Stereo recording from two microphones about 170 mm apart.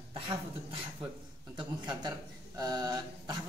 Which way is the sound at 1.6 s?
25° right (ahead or behind).